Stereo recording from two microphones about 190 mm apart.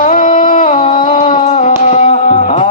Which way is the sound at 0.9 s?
40° left (ahead or behind).